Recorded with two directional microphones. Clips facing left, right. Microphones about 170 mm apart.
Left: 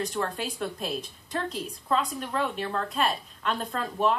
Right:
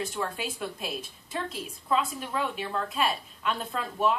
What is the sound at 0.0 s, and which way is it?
Speech, 5° right (ahead or behind).